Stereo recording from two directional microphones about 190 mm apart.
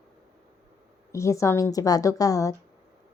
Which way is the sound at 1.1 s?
15° left (ahead or behind).